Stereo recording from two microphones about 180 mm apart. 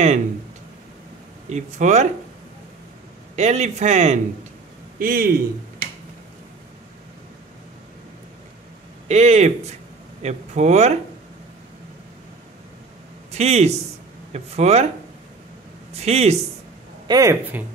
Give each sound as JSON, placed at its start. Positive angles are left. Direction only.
{"t": 1.5, "sound": "speech", "side_deg": -40}
{"t": 3.3, "sound": "speech", "side_deg": -40}
{"t": 4.9, "sound": "speech", "side_deg": -55}
{"t": 9.0, "sound": "speech", "side_deg": -35}
{"t": 13.3, "sound": "speech", "side_deg": -35}
{"t": 15.9, "sound": "speech", "side_deg": -35}
{"t": 17.1, "sound": "speech", "side_deg": -15}